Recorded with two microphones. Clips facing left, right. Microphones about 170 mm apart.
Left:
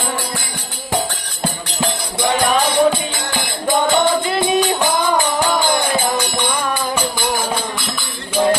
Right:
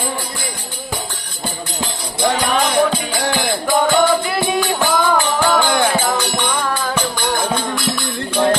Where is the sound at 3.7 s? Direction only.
20° left (ahead or behind).